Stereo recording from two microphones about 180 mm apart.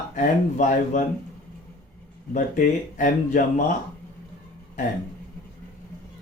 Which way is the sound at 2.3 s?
50° left (ahead or behind).